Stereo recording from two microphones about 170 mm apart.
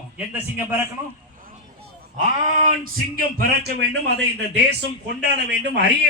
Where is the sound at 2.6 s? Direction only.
55° right (ahead or behind).